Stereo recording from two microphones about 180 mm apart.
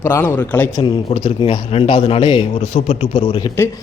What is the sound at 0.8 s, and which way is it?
A man's voice, 35° left (ahead or behind).